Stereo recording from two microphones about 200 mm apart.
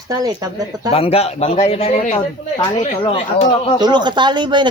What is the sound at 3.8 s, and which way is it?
Speech, 20° right (ahead or behind).